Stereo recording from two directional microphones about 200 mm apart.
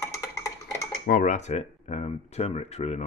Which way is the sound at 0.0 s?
15° left (ahead or behind).